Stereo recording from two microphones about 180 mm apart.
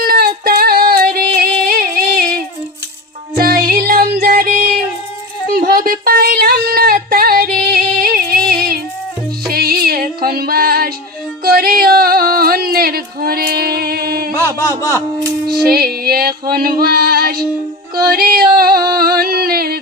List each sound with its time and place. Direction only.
0.0 s female singing: 60° right (ahead or behind)
3.3 s music: 55° right (ahead or behind)
5.5 s female singing: 55° right (ahead or behind)
9.5 s music: 55° right (ahead or behind)
11.4 s a sound: 55° right (ahead or behind)
14.3 s a sound: 15° left (ahead or behind)
15.6 s music: 55° right (ahead or behind)